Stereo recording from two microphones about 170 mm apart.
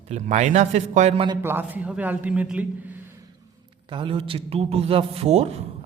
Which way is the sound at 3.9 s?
30° right (ahead or behind).